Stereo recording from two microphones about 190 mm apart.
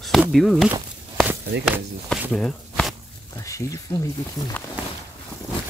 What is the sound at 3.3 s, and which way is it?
Speech, 15° left (ahead or behind).